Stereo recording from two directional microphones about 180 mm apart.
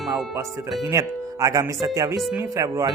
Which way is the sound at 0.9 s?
20° right (ahead or behind).